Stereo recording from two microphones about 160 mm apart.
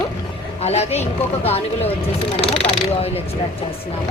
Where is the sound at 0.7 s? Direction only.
40° left (ahead or behind).